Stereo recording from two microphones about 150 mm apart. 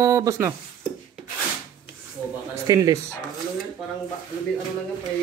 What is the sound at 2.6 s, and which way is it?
Speech, 25° right (ahead or behind).